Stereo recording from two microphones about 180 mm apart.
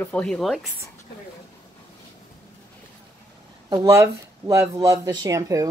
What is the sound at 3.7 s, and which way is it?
Speech, 15° right (ahead or behind).